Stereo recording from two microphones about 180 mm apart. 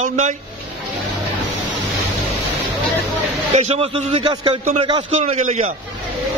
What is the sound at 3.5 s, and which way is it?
A man's voice, 35° right (ahead or behind).